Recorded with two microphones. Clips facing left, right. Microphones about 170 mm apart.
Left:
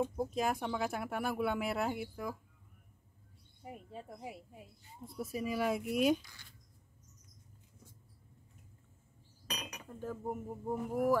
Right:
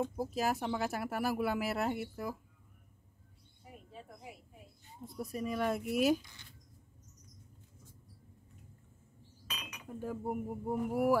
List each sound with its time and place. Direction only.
0.1 s speech: 5° right (ahead or behind)
5.0 s speech: centre (ahead or behind)
9.5 s cutlery: 40° left (ahead or behind)
9.8 s speech: 10° right (ahead or behind)